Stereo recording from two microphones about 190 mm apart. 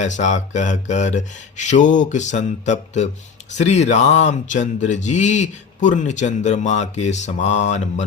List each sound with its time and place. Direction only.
0.0 s speech: 40° left (ahead or behind)